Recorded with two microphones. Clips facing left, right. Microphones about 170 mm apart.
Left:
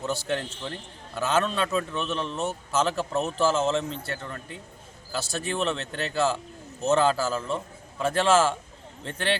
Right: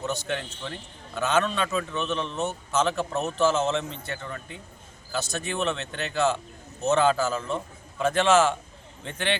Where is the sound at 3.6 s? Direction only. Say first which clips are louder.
Left 1 dB; centre (ahead or behind).